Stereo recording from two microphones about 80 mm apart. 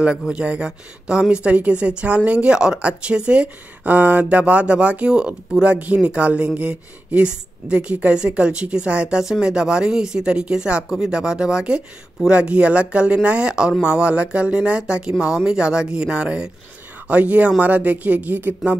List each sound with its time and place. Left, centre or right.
0.3 s speech: centre